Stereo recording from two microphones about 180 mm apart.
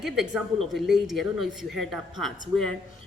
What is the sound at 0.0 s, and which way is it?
Speech, centre (ahead or behind).